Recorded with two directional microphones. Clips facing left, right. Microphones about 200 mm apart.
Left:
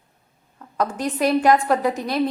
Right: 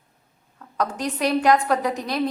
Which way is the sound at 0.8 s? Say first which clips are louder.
Left 2 dB; 5° left (ahead or behind).